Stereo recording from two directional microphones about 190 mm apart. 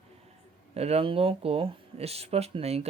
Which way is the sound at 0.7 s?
30° right (ahead or behind).